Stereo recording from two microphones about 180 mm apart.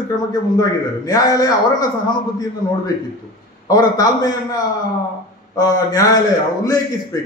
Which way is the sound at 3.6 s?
20° left (ahead or behind).